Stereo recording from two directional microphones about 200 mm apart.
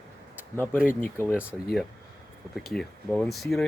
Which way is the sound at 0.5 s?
10° left (ahead or behind).